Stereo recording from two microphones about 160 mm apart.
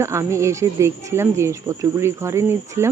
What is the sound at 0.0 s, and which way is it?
Speech, 15° right (ahead or behind).